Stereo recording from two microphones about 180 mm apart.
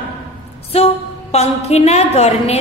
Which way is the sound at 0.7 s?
35° left (ahead or behind).